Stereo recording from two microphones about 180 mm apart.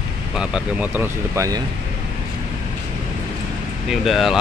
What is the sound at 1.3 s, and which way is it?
Speech, 15° right (ahead or behind).